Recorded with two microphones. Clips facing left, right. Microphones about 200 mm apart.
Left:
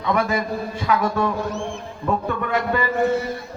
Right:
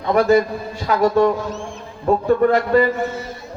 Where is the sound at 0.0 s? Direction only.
45° right (ahead or behind).